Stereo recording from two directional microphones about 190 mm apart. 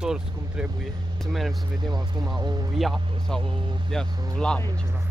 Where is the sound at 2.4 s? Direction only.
20° right (ahead or behind).